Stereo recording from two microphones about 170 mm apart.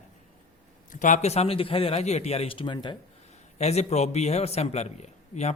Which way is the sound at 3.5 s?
40° left (ahead or behind).